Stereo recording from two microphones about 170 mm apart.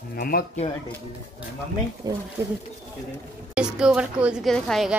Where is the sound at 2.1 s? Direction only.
20° right (ahead or behind).